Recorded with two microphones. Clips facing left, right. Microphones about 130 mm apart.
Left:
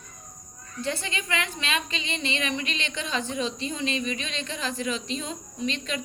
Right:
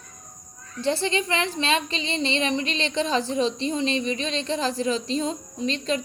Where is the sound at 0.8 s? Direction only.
30° right (ahead or behind).